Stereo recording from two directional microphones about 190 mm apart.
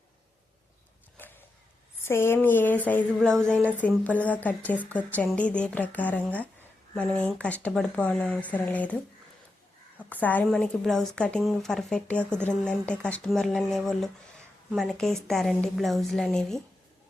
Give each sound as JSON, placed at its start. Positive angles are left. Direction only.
{"t": 1.1, "sound": "a sound", "side_deg": 10}
{"t": 2.0, "sound": "speech", "side_deg": 10}
{"t": 10.0, "sound": "a woman's voice", "side_deg": 10}